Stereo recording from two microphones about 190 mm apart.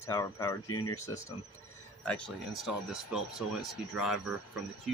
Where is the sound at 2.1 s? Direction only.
Centre (ahead or behind).